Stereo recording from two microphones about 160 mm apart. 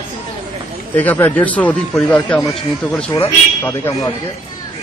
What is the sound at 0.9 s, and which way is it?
A man's voice, 10° left (ahead or behind).